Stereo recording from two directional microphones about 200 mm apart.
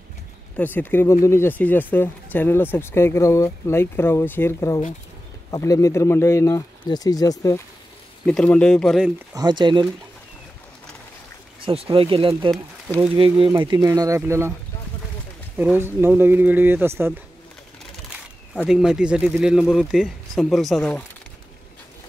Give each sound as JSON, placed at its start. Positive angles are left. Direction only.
{"t": 0.6, "sound": "speech", "side_deg": 10}
{"t": 8.3, "sound": "speech", "side_deg": 5}
{"t": 9.3, "sound": "speech", "side_deg": -20}
{"t": 11.6, "sound": "speech", "side_deg": -30}
{"t": 12.5, "sound": "speech", "side_deg": -10}
{"t": 13.1, "sound": "speech", "side_deg": -25}
{"t": 15.5, "sound": "speech", "side_deg": -10}
{"t": 18.5, "sound": "speech", "side_deg": 0}